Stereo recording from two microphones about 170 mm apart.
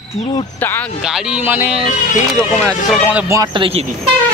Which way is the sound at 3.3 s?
20° right (ahead or behind).